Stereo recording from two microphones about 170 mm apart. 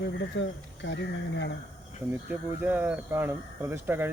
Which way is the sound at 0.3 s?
90° left.